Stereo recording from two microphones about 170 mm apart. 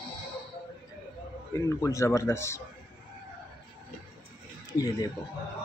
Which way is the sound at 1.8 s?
15° left (ahead or behind).